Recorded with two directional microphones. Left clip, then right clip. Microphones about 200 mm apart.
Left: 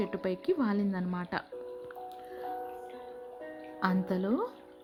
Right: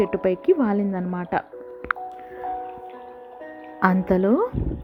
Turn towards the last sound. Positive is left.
turn(degrees=-30)  # may be behind; listen again after turning